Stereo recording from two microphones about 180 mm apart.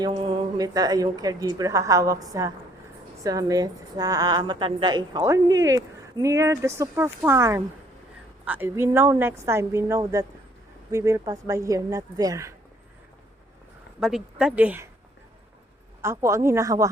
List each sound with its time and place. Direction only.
0.0 s a woman's voice: 25° right (ahead or behind)
14.0 s a woman's voice: 5° right (ahead or behind)
16.0 s a woman's voice: 15° right (ahead or behind)